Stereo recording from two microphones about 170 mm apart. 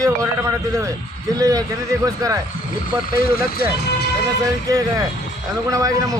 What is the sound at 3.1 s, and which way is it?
Speech, 65° left (ahead or behind).